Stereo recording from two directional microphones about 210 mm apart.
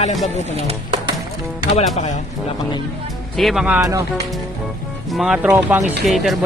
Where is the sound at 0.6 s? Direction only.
30° right (ahead or behind).